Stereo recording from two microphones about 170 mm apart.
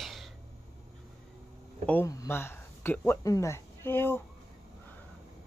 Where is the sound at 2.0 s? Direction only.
15° left (ahead or behind).